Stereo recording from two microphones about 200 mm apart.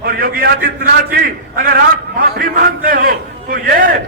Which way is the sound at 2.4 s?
45° right (ahead or behind).